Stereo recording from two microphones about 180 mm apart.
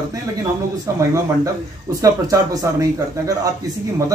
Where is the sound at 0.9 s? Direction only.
15° right (ahead or behind).